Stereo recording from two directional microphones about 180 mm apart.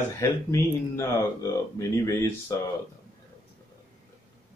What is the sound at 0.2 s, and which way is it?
Speech, 15° left (ahead or behind).